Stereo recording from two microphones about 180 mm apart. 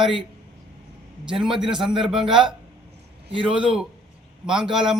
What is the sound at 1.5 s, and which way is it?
A man's voice, 5° right (ahead or behind).